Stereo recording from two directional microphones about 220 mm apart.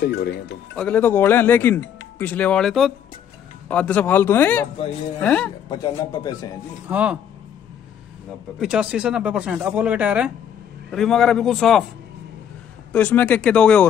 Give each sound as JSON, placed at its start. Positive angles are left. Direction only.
{"t": 0.0, "sound": "speech", "side_deg": 45}
{"t": 0.7, "sound": "speech", "side_deg": 5}
{"t": 5.7, "sound": "speech", "side_deg": 20}
{"t": 6.9, "sound": "speech", "side_deg": -5}
{"t": 8.5, "sound": "speech", "side_deg": -5}
{"t": 12.9, "sound": "speech", "side_deg": 5}